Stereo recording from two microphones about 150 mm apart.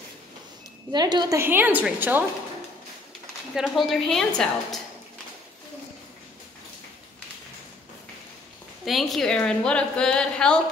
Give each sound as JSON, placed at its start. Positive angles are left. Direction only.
{"t": 0.9, "sound": "a woman's voice", "side_deg": -30}
{"t": 1.4, "sound": "a woman's voice", "side_deg": -15}
{"t": 3.5, "sound": "a woman's voice", "side_deg": 0}
{"t": 8.8, "sound": "a woman's voice", "side_deg": 0}